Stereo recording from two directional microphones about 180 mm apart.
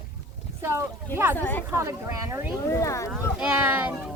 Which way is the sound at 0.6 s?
15° right (ahead or behind).